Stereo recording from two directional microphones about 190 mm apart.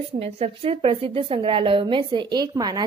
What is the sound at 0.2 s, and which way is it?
A woman's voice, 30° right (ahead or behind).